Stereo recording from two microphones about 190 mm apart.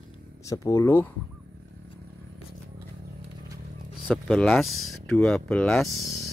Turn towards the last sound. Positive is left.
turn(degrees=0)  # may be behind; listen again after turning